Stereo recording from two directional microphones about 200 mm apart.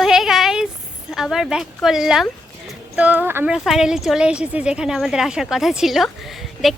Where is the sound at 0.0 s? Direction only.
Centre (ahead or behind).